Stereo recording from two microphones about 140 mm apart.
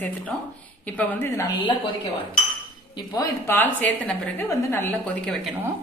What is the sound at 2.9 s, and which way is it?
Speech, 25° left (ahead or behind).